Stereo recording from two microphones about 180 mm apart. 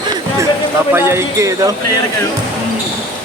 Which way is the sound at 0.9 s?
15° right (ahead or behind).